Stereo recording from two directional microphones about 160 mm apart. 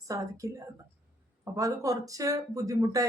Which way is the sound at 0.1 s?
20° right (ahead or behind).